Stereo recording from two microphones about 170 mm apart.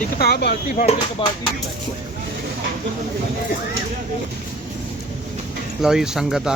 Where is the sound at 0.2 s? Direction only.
70° left (ahead or behind).